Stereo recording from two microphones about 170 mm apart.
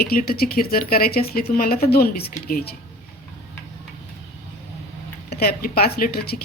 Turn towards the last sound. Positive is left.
turn(degrees=65)  # may be behind; listen again after turning